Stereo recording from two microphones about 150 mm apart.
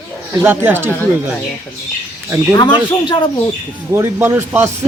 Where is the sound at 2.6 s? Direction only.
30° left (ahead or behind).